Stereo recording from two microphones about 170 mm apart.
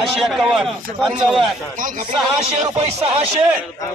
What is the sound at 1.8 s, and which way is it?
Speech, 50° right (ahead or behind).